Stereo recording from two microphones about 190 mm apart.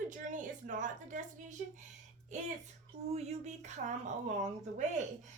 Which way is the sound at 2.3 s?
40° right (ahead or behind).